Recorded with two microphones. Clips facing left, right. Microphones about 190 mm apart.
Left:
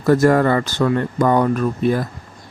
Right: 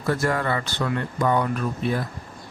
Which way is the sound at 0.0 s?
40° left (ahead or behind).